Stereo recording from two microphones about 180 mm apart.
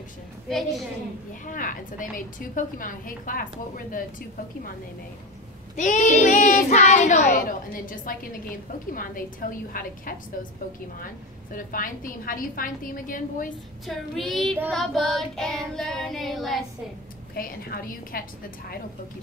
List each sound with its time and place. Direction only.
0.5 s child singing: centre (ahead or behind)
1.4 s speech: 50° left (ahead or behind)
5.8 s speech: 45° left (ahead or behind)
11.5 s speech: 50° left (ahead or behind)
13.8 s child singing: centre (ahead or behind)
17.3 s speech: 55° left (ahead or behind)